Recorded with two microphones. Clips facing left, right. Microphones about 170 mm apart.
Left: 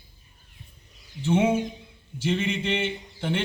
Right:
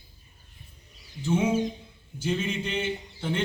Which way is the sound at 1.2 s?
75° left (ahead or behind).